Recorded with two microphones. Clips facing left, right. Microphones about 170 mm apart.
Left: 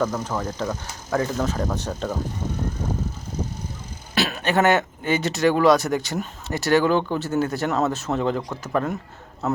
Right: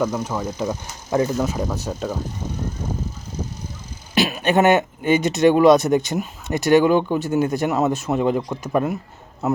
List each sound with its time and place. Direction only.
0.0 s speech: 15° right (ahead or behind)
1.4 s speech: 10° right (ahead or behind)
4.1 s speech: 15° right (ahead or behind)